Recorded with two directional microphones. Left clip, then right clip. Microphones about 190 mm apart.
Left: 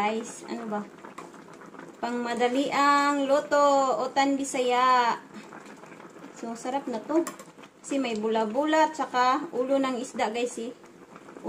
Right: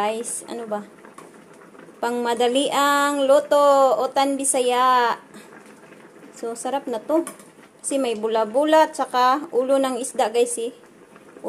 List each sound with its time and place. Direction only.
0.0 s speech: 35° right (ahead or behind)
2.0 s speech: 35° right (ahead or behind)
6.5 s speech: 35° right (ahead or behind)